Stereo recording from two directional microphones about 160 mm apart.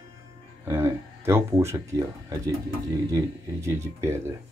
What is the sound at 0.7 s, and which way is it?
Speech, 15° right (ahead or behind).